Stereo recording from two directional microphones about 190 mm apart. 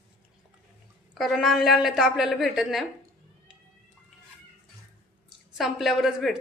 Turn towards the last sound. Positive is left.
turn(degrees=0)  # may be behind; listen again after turning